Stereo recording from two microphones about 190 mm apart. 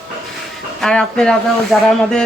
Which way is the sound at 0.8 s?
5° left (ahead or behind).